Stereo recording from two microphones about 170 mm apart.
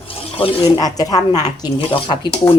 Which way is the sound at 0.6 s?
20° left (ahead or behind).